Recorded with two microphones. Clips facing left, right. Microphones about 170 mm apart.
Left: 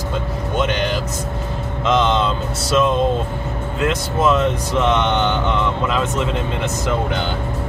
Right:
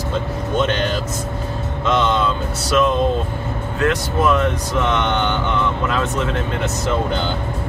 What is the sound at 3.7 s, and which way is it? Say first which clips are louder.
Speech: right 1 dB; 20° left (ahead or behind).